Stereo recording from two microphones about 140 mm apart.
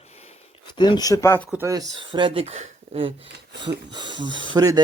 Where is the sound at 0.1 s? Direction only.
50° left (ahead or behind).